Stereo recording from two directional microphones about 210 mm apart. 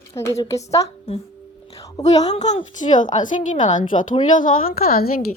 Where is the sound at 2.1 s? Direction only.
30° left (ahead or behind).